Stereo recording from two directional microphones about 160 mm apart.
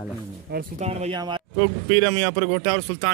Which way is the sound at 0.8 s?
40° right (ahead or behind).